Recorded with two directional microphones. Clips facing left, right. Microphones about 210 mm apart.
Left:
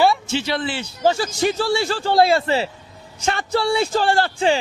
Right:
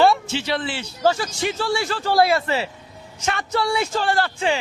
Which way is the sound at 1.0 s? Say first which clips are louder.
Left 1 dB; 30° left (ahead or behind).